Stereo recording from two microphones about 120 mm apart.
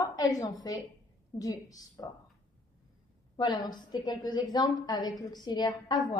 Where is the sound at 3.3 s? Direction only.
40° left (ahead or behind).